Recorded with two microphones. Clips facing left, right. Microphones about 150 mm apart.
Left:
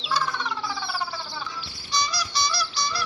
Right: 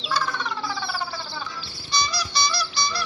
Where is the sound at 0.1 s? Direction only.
15° left (ahead or behind).